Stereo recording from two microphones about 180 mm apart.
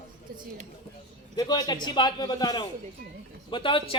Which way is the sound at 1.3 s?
25° left (ahead or behind).